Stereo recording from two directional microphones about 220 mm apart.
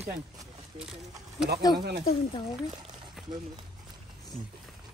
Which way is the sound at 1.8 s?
50° right (ahead or behind).